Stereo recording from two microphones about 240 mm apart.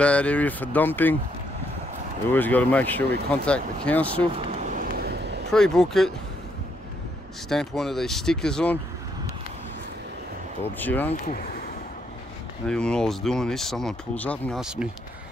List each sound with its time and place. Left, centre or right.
0.0 s speech: centre
2.2 s speech: centre
4.6 s vehicle: right
5.5 s speech: centre
7.4 s speech: centre
10.8 s speech: centre
11.2 s speech: left
12.6 s speech: centre